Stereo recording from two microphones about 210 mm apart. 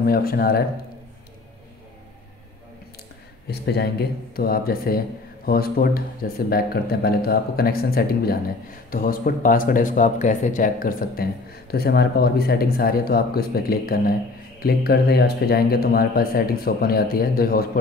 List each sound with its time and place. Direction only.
0.0 s speech: 45° left (ahead or behind)
3.4 s speech: 50° left (ahead or behind)